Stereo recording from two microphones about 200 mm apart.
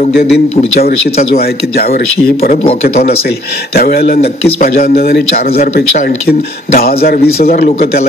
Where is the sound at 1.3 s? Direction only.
50° left (ahead or behind).